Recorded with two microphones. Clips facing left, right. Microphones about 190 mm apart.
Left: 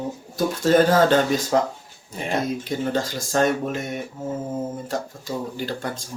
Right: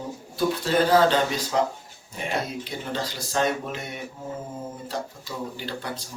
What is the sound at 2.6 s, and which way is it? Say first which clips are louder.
Speech: left 6 dB; 45° left (ahead or behind).